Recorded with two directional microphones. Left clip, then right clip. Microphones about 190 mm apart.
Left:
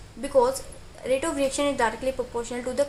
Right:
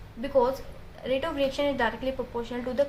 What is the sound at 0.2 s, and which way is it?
A woman's voice, 30° left (ahead or behind).